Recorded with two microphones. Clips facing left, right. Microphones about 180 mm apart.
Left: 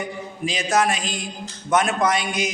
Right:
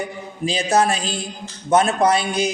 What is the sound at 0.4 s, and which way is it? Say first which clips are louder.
A man's voice: right 3 dB; 30° right (ahead or behind).